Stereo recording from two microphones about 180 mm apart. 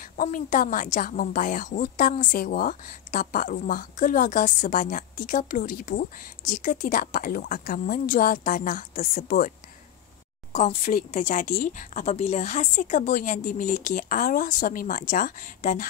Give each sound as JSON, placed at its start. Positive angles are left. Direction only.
{"t": 0.0, "sound": "a woman's voice", "side_deg": 45}
{"t": 10.5, "sound": "a woman's voice", "side_deg": 40}